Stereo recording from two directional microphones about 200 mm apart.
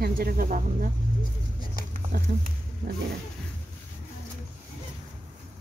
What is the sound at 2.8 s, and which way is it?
Speech, 45° right (ahead or behind).